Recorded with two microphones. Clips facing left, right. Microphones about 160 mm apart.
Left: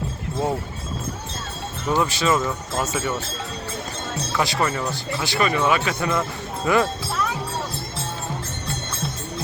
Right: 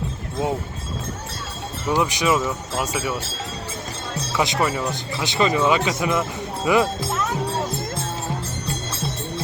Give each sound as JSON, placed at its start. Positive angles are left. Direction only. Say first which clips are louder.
{"t": 1.9, "sound": "speech", "louder": "even", "side_deg": -15}
{"t": 4.4, "sound": "speech", "louder": "right 1 dB", "side_deg": -20}